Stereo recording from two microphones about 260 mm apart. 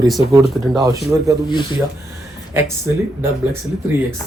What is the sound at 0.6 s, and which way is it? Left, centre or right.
Speech, centre.